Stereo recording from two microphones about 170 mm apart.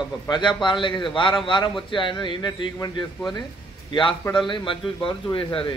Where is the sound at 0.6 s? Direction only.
30° left (ahead or behind).